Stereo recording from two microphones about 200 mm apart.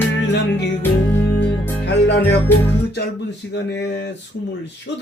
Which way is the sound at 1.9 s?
60° left (ahead or behind).